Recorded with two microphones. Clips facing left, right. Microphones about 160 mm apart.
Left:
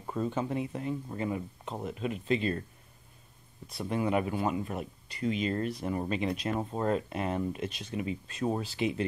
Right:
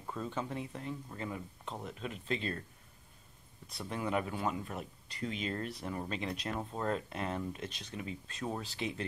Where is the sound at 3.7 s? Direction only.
5° left (ahead or behind).